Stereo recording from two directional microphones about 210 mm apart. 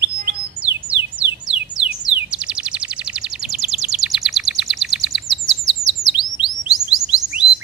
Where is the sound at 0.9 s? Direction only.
5° right (ahead or behind).